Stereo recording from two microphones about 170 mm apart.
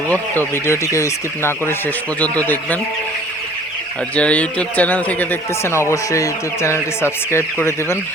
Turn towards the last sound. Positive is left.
turn(degrees=15)  # may be behind; listen again after turning